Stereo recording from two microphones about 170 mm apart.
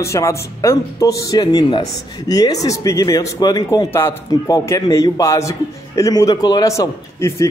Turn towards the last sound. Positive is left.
turn(degrees=15)  # may be behind; listen again after turning